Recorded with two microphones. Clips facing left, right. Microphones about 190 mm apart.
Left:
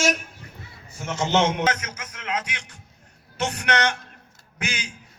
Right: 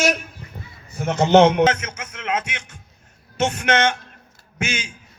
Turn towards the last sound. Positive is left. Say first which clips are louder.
# right 5 dB
turn(degrees=-25)  # may be behind; listen again after turning